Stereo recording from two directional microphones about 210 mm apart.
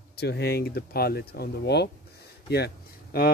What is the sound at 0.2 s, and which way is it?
Speech, 50° left (ahead or behind).